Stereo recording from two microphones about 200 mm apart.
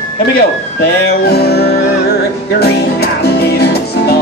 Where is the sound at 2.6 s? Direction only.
55° left (ahead or behind).